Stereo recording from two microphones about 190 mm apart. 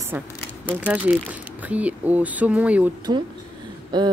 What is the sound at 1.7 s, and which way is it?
Speech, 5° right (ahead or behind).